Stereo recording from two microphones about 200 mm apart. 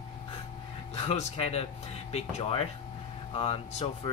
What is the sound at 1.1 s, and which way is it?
Speech, 30° left (ahead or behind).